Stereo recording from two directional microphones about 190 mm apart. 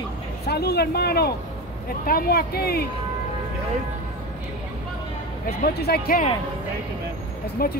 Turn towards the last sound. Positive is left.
turn(degrees=50)  # may be behind; listen again after turning